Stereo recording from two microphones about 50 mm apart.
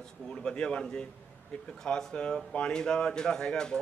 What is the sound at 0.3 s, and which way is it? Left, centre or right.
Speech, centre.